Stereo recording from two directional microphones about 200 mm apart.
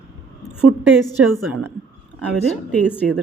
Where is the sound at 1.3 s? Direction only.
5° right (ahead or behind).